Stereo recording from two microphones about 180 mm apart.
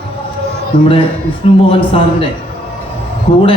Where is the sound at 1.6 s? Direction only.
30° left (ahead or behind).